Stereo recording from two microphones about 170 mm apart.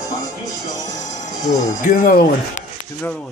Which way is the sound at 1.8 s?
55° left (ahead or behind).